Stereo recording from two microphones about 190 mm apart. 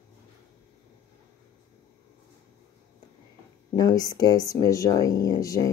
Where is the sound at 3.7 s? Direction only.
20° left (ahead or behind).